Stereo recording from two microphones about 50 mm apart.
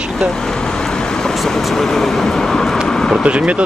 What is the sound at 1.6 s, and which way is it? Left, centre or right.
Speech, centre.